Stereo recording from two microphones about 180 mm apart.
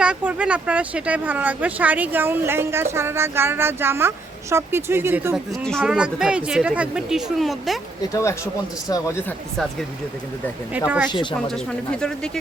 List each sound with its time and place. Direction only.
0.0 s speech: 5° right (ahead or behind)
5.3 s speech: centre (ahead or behind)
8.1 s speech: 15° left (ahead or behind)
10.8 s speech: 5° right (ahead or behind)
11.1 s speech: 25° left (ahead or behind)
11.4 s speech: 5° left (ahead or behind)